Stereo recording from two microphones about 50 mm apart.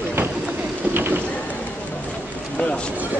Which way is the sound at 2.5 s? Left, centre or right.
Left.